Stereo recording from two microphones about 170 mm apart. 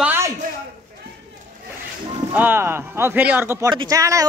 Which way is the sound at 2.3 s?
10° right (ahead or behind).